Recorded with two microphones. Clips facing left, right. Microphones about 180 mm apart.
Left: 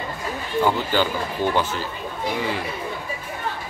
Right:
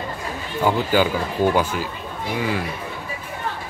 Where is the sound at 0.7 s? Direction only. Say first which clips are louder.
Right 5 dB; 10° right (ahead or behind).